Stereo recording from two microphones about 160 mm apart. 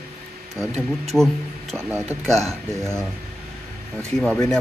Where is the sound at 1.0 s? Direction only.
Centre (ahead or behind).